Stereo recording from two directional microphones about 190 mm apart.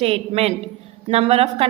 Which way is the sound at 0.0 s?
30° right (ahead or behind).